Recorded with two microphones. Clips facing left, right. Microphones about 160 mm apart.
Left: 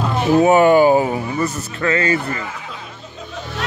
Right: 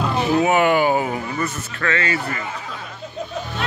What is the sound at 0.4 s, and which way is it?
Speech, 35° left (ahead or behind).